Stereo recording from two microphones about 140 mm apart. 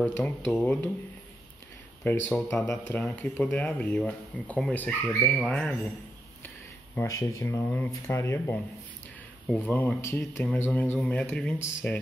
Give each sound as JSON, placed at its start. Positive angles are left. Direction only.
{"t": 0.0, "sound": "speech", "side_deg": 10}
{"t": 2.0, "sound": "speech", "side_deg": 15}
{"t": 7.0, "sound": "speech", "side_deg": 20}